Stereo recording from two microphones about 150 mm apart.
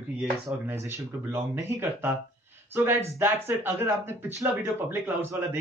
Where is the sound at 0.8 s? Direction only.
15° right (ahead or behind).